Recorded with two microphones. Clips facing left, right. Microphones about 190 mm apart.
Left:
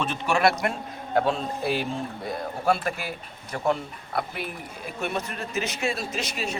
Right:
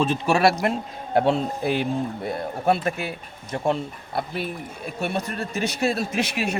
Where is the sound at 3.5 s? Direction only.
25° right (ahead or behind).